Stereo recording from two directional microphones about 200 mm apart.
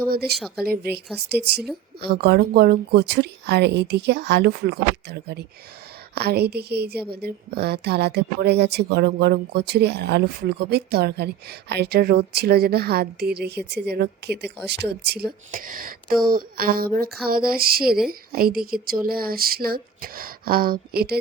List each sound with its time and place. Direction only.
0.1 s speech: 50° right (ahead or behind)
0.3 s speech: centre (ahead or behind)
0.6 s a woman's voice: 50° right (ahead or behind)